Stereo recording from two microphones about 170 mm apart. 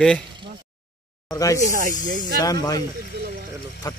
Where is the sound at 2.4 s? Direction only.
20° left (ahead or behind).